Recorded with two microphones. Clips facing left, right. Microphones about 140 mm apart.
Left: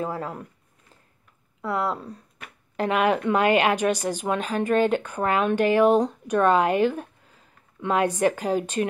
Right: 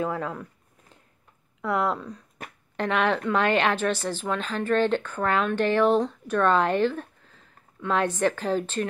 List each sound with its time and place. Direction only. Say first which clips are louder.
0.0 s speech: right 1 dB; 35° left (ahead or behind)
1.7 s speech: right 1 dB; 30° left (ahead or behind)
2.8 s a woman's voice: left 2 dB; 10° left (ahead or behind)